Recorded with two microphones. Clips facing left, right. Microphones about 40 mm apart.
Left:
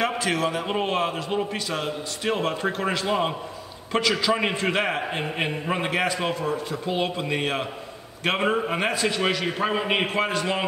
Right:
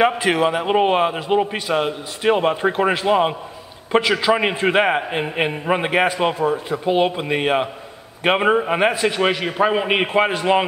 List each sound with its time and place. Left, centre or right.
0.0 s a man's voice: right